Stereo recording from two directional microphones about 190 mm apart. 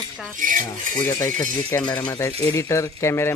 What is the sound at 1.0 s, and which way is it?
Cutlery, 10° left (ahead or behind).